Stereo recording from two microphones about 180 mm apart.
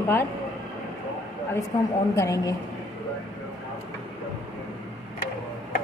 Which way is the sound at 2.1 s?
15° left (ahead or behind).